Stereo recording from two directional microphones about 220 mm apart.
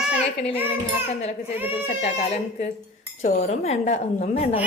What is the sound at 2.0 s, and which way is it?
A woman's voice, 30° left (ahead or behind).